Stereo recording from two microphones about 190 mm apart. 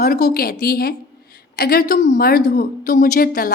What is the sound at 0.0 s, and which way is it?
A woman's voice, 50° left (ahead or behind).